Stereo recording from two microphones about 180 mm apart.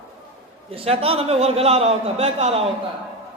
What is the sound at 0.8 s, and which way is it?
Speech, 35° right (ahead or behind).